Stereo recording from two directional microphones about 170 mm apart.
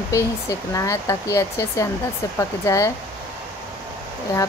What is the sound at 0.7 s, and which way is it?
Speech, 20° left (ahead or behind).